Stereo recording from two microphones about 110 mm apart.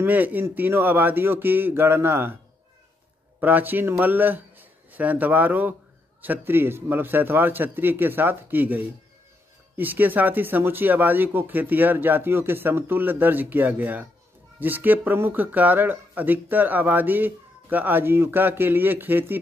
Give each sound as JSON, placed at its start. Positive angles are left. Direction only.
{"t": 0.0, "sound": "a man's voice", "side_deg": -15}
{"t": 3.3, "sound": "a man's voice", "side_deg": -15}